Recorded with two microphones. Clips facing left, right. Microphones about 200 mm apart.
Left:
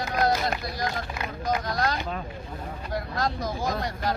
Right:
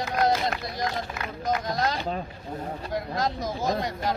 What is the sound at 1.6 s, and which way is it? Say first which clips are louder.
Speech: even; 20° right (ahead or behind).